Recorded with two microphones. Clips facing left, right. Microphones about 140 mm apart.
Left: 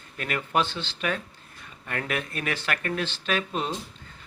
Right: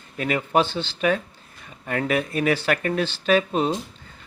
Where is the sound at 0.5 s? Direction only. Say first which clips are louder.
Right 4 dB; 35° right (ahead or behind).